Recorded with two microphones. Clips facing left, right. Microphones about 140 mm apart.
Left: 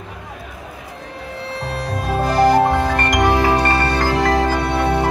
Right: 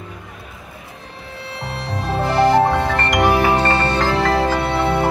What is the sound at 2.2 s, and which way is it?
Music, 25° right (ahead or behind).